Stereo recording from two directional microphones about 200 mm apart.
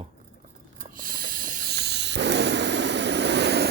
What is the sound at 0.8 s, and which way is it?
Snoring, 45° right (ahead or behind).